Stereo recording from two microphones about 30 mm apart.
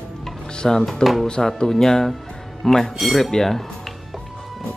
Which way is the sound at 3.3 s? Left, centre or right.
Centre.